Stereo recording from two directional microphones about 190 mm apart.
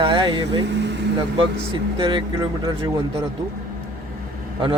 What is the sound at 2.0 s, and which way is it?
Speech, 25° right (ahead or behind).